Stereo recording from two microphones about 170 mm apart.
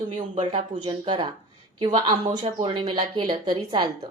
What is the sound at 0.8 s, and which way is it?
A woman's voice, 25° right (ahead or behind).